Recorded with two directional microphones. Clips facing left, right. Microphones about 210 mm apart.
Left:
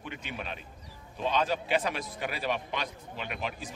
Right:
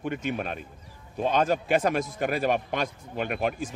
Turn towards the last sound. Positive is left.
turn(degrees=-50)  # may be behind; listen again after turning